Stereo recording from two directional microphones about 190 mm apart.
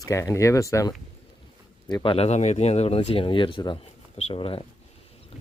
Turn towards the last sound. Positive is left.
turn(degrees=30)  # may be behind; listen again after turning